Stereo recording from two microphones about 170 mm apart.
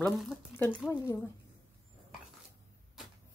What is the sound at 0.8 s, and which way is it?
Speech, 5° right (ahead or behind).